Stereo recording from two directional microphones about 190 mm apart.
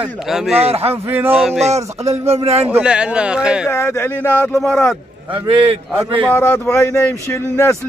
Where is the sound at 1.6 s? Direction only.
35° right (ahead or behind).